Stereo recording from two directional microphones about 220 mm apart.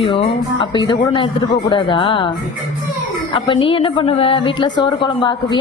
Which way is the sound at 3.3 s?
20° left (ahead or behind).